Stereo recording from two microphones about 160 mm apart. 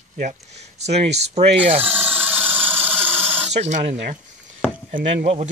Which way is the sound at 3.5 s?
45° right (ahead or behind).